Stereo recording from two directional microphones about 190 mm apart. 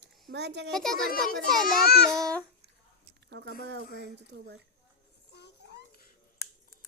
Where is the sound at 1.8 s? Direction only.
60° left (ahead or behind).